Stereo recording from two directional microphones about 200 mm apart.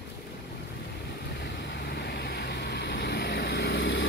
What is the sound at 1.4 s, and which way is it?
Vehicle, 55° left (ahead or behind).